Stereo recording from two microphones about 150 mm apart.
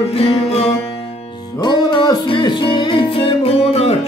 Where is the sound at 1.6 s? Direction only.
30° left (ahead or behind).